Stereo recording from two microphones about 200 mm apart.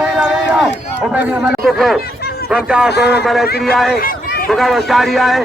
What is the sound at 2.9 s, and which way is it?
Speech, 55° left (ahead or behind).